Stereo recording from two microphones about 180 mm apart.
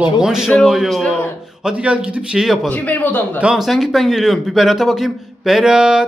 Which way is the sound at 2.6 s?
10° left (ahead or behind).